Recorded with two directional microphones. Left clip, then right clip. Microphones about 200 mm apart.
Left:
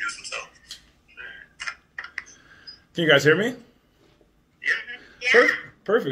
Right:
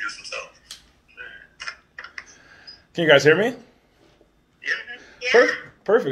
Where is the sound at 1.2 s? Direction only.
60° left (ahead or behind).